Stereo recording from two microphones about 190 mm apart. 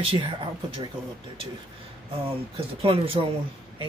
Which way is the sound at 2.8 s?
25° right (ahead or behind).